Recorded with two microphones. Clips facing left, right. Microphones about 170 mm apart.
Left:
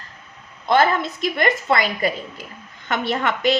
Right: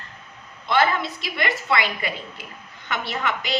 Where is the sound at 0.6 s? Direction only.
45° left (ahead or behind).